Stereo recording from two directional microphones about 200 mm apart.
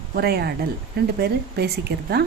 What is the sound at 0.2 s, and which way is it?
A woman's voice, 50° right (ahead or behind).